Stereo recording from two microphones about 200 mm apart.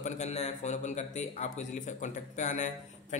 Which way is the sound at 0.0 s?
35° left (ahead or behind).